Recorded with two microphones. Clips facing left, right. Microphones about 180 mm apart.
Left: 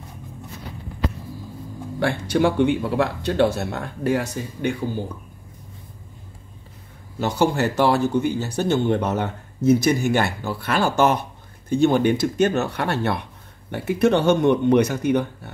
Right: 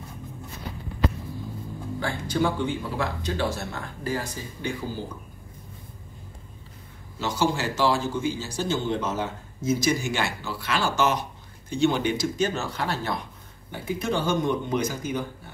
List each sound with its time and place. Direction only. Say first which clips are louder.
2.0 s speech: left 6 dB; 70° left (ahead or behind)
7.2 s speech: left 5 dB; 60° left (ahead or behind)